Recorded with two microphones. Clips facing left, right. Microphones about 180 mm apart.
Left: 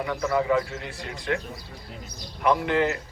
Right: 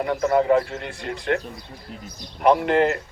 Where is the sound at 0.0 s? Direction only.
45° right (ahead or behind).